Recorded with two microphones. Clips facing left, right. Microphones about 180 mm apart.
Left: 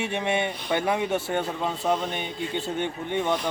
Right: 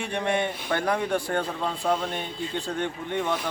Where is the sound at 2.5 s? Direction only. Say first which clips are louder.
Left 1 dB; 25° left (ahead or behind).